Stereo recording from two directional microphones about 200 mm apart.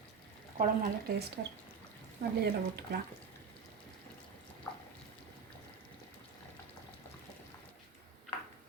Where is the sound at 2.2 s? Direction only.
60° right (ahead or behind).